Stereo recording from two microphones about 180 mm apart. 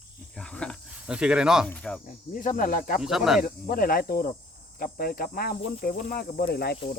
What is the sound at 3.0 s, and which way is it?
Speech, centre (ahead or behind).